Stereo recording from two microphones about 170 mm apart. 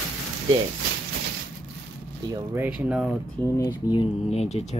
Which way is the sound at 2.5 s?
10° right (ahead or behind).